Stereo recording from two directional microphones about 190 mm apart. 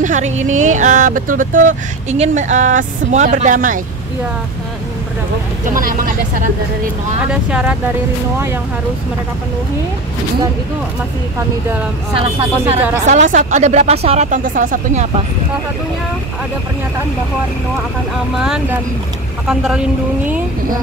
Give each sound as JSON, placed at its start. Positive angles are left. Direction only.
{"t": 0.0, "sound": "speech", "side_deg": -40}
{"t": 5.7, "sound": "speech", "side_deg": -45}
{"t": 7.5, "sound": "speech", "side_deg": -5}
{"t": 12.2, "sound": "speech", "side_deg": -30}
{"t": 18.4, "sound": "speech", "side_deg": -5}